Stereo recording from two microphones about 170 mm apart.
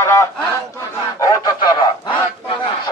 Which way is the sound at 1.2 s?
25° left (ahead or behind).